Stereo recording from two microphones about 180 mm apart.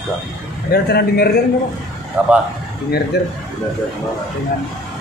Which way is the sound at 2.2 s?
10° right (ahead or behind).